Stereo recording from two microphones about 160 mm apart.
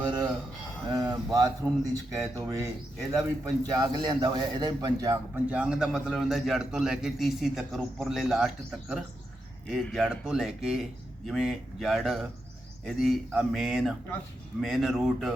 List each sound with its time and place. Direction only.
0.9 s speech: 25° right (ahead or behind)
5.3 s a man's voice: 10° right (ahead or behind)